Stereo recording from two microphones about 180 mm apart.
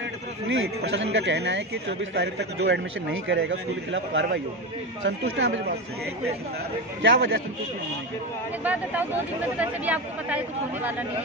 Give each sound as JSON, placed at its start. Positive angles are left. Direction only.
{"t": 0.5, "sound": "a man's voice", "side_deg": -90}
{"t": 1.1, "sound": "a man's voice", "side_deg": -75}
{"t": 7.0, "sound": "a man's voice", "side_deg": -90}
{"t": 8.6, "sound": "speech", "side_deg": -10}